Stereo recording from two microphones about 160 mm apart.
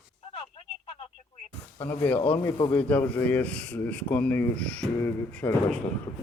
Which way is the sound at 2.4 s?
25° left (ahead or behind).